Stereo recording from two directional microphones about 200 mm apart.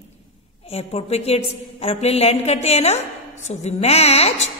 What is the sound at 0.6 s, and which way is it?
A woman's voice, 30° left (ahead or behind).